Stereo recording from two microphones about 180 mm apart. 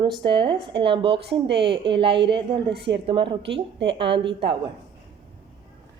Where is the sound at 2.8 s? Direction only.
70° right (ahead or behind).